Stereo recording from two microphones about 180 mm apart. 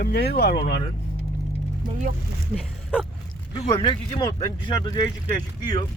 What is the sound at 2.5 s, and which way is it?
Speech, centre (ahead or behind).